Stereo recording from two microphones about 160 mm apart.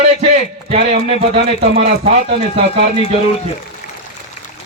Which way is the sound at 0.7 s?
35° right (ahead or behind).